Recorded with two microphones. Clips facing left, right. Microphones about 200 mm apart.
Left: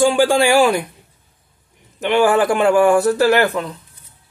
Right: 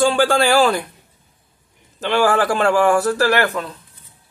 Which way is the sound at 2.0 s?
15° left (ahead or behind).